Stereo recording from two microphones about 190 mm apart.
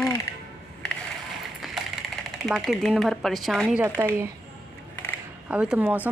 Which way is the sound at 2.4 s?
Centre (ahead or behind).